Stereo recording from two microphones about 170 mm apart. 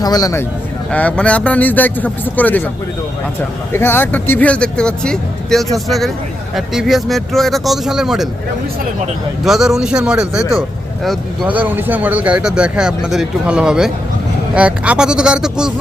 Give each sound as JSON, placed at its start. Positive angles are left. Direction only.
{"t": 0.0, "sound": "speech", "side_deg": 20}
{"t": 0.9, "sound": "speech", "side_deg": 5}
{"t": 3.7, "sound": "a man's voice", "side_deg": 15}
{"t": 9.4, "sound": "a man's voice", "side_deg": 0}
{"t": 11.4, "sound": "a man's voice", "side_deg": -10}